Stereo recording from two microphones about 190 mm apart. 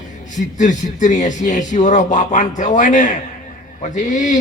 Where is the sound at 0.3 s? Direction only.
40° left (ahead or behind).